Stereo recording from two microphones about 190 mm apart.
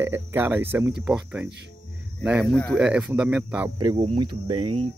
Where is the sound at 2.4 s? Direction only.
5° left (ahead or behind).